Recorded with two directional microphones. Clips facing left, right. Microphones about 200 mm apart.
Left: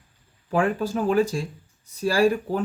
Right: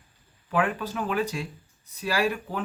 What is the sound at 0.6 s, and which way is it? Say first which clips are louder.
Speech: left 5 dB; 45° left (ahead or behind).